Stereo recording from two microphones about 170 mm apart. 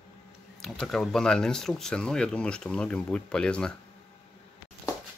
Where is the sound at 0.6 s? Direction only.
Centre (ahead or behind).